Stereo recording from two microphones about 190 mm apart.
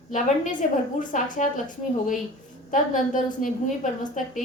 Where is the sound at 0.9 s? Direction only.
40° left (ahead or behind).